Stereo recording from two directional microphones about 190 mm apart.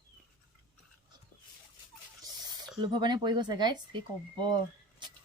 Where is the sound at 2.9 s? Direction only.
20° right (ahead or behind).